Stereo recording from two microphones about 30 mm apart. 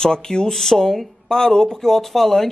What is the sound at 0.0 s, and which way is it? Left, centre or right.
Speech, left.